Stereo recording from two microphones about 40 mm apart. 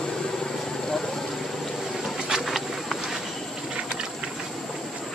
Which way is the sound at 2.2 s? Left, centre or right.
Centre.